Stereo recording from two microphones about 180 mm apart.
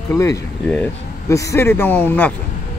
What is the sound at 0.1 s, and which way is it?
Speech, 15° left (ahead or behind).